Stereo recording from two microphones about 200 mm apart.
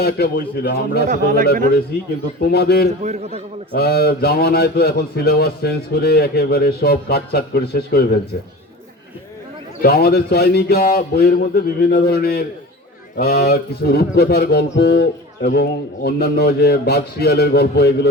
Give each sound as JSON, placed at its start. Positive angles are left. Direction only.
{"t": 0.0, "sound": "speech", "side_deg": 55}
{"t": 1.0, "sound": "a man's voice", "side_deg": -40}
{"t": 2.4, "sound": "speech", "side_deg": 55}
{"t": 3.0, "sound": "a man's voice", "side_deg": -35}
{"t": 3.8, "sound": "speech", "side_deg": 55}
{"t": 9.8, "sound": "speech", "side_deg": 50}